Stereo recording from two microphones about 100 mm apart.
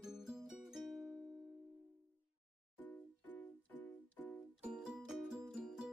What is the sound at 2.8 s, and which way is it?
Music, 20° left (ahead or behind).